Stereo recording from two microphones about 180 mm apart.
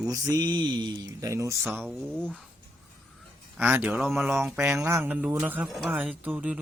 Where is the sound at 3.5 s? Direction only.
10° right (ahead or behind).